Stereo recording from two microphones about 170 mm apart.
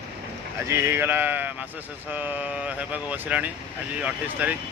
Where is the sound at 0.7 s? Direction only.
15° right (ahead or behind).